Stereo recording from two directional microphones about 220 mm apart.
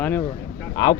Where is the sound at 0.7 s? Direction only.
20° left (ahead or behind).